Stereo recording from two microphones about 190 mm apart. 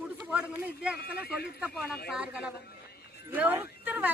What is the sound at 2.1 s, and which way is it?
Speech, 5° right (ahead or behind).